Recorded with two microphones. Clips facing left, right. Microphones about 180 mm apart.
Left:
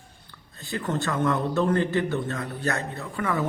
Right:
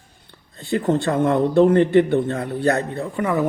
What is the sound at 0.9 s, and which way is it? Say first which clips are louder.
A man's voice: right 6 dB; 25° right (ahead or behind).